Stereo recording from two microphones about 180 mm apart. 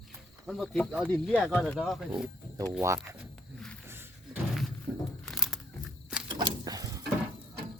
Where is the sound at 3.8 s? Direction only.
10° right (ahead or behind).